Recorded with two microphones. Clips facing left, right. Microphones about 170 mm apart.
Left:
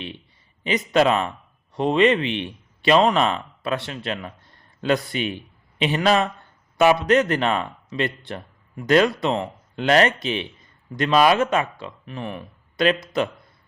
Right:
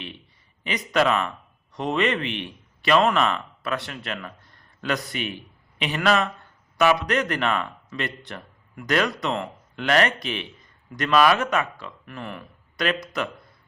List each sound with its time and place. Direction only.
0.7 s a man's voice: 30° left (ahead or behind)